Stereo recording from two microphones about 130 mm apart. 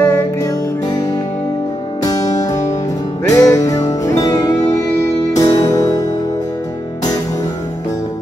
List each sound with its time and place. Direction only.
0.0 s music: 25° left (ahead or behind)
2.0 s music: 30° left (ahead or behind)